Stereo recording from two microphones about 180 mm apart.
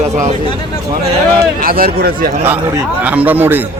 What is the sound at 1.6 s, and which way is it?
Speech, 55° right (ahead or behind).